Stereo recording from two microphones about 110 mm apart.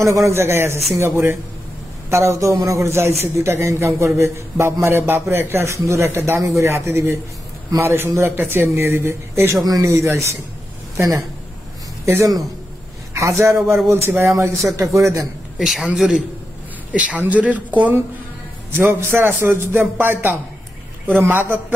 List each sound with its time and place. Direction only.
0.0 s a man's voice: 25° right (ahead or behind)
13.1 s a man's voice: 25° right (ahead or behind)
15.6 s a man's voice: 5° right (ahead or behind)